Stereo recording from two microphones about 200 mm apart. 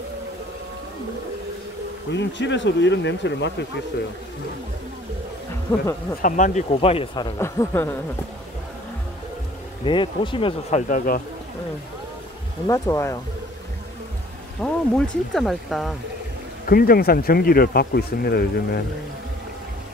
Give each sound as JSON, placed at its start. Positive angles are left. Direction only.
{"t": 2.1, "sound": "speech", "side_deg": 65}
{"t": 6.2, "sound": "speech", "side_deg": 40}
{"t": 7.3, "sound": "speech", "side_deg": 15}
{"t": 9.8, "sound": "speech", "side_deg": 25}
{"t": 10.9, "sound": "speech", "side_deg": 45}
{"t": 12.6, "sound": "speech", "side_deg": 15}
{"t": 14.6, "sound": "speech", "side_deg": 5}
{"t": 16.6, "sound": "speech", "side_deg": 45}